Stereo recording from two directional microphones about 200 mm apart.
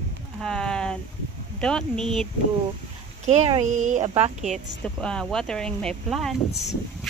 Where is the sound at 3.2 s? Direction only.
30° right (ahead or behind).